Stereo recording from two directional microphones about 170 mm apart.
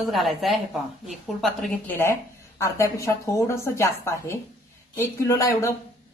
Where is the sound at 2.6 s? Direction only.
15° left (ahead or behind).